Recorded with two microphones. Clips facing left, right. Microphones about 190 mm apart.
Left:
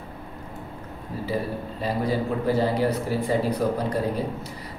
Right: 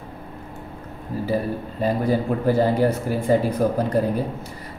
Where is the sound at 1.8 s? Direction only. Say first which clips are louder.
Right 4 dB; 50° right (ahead or behind).